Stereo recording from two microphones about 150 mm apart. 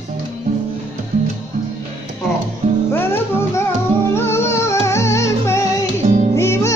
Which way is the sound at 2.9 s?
15° left (ahead or behind).